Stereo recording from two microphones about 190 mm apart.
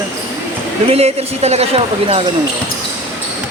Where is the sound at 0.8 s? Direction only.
35° right (ahead or behind).